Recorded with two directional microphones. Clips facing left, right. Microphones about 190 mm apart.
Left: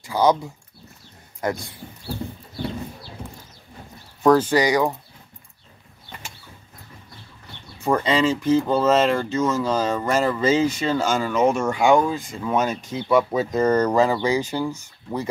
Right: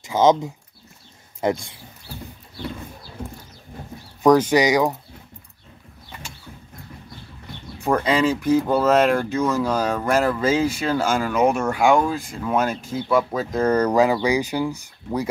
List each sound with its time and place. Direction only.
0.0 s speech: 20° right (ahead or behind)
4.2 s speech: 15° right (ahead or behind)
8.0 s speech: 10° right (ahead or behind)
13.7 s speech: 10° right (ahead or behind)